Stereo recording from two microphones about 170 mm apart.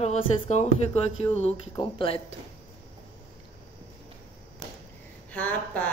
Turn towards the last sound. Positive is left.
turn(degrees=10)  # may be behind; listen again after turning